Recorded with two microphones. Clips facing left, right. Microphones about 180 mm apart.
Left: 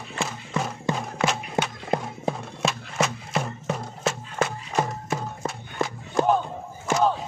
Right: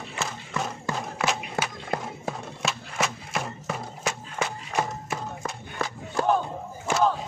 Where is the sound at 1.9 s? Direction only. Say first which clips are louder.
Left 5 dB; 20° left (ahead or behind).